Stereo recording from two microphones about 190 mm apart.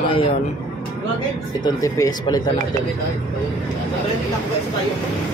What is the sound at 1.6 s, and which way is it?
Speech, 20° left (ahead or behind).